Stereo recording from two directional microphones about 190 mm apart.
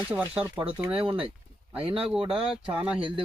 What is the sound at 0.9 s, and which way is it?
Speech, 30° right (ahead or behind).